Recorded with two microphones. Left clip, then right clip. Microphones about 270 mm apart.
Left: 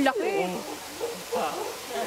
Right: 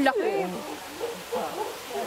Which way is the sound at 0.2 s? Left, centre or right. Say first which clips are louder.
Even; right.